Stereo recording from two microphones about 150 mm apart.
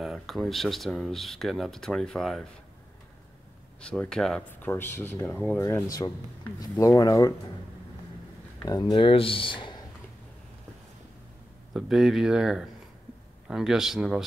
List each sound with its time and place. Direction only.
0.0 s speech: centre (ahead or behind)
3.8 s speech: 5° left (ahead or behind); by 7.3 s 25° left (ahead or behind)
8.6 s speech: 25° left (ahead or behind)
11.7 s speech: centre (ahead or behind)